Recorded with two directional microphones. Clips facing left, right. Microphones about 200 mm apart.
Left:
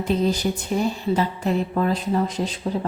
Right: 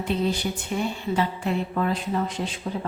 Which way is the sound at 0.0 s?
40° left (ahead or behind).